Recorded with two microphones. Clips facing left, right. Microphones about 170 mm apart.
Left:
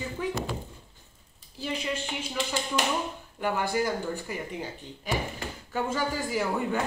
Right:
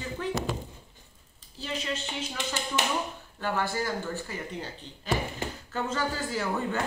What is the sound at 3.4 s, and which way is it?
Speech, 15° left (ahead or behind).